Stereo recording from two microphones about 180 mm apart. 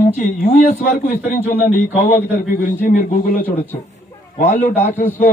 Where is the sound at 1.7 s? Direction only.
35° left (ahead or behind).